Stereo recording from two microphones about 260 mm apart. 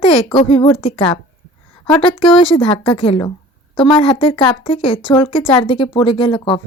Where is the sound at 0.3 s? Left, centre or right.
Centre.